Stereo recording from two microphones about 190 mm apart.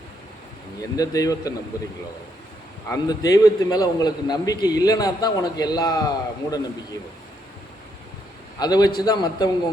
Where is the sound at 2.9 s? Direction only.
20° left (ahead or behind).